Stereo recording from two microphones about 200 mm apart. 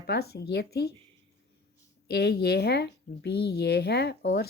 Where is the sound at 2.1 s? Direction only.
55° left (ahead or behind).